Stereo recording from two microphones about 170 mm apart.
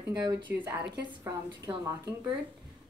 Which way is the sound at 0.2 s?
25° right (ahead or behind).